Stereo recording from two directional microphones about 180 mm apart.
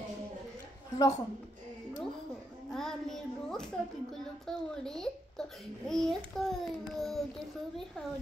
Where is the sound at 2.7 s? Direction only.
5° left (ahead or behind).